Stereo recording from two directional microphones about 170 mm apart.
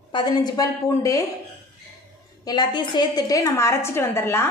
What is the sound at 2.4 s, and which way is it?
A woman's voice, 25° left (ahead or behind).